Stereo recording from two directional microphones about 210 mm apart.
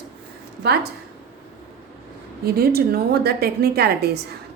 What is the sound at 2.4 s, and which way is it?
A woman's voice, 45° right (ahead or behind).